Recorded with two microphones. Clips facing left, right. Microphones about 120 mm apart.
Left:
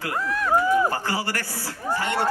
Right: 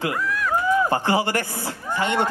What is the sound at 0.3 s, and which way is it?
Run, 30° left (ahead or behind).